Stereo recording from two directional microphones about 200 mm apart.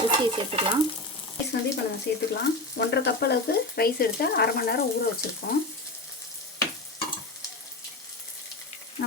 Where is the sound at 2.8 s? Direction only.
55° left (ahead or behind).